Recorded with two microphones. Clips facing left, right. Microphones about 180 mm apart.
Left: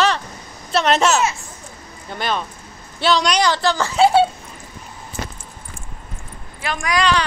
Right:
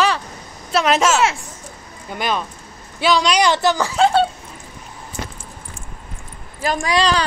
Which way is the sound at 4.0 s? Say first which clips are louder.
Left 2 dB; 5° left (ahead or behind).